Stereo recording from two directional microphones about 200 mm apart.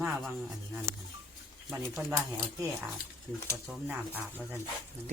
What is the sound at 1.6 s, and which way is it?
Speech, centre (ahead or behind).